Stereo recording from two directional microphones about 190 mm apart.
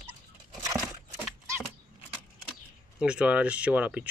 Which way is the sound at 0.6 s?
15° right (ahead or behind).